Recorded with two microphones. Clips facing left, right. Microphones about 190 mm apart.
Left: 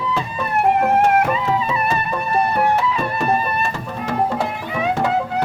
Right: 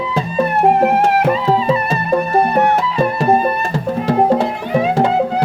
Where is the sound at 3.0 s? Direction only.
35° right (ahead or behind).